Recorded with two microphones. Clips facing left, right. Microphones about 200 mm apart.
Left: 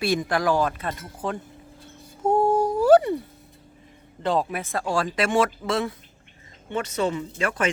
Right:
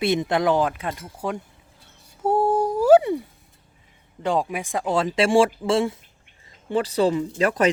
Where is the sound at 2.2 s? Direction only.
5° right (ahead or behind).